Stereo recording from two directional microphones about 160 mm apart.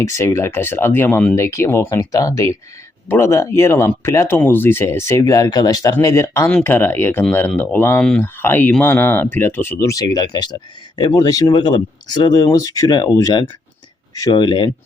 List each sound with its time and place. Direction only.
0.0 s speech: 15° left (ahead or behind)